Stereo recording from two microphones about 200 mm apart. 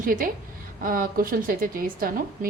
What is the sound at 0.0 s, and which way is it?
A woman's voice, 45° right (ahead or behind).